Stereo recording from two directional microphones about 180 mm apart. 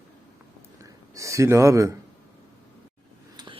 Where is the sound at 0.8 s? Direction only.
20° right (ahead or behind).